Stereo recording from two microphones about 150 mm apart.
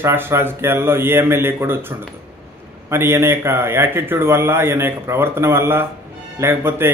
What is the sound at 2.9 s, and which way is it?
A man's voice, 15° right (ahead or behind).